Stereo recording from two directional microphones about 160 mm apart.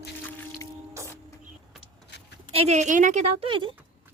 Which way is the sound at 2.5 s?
40° right (ahead or behind).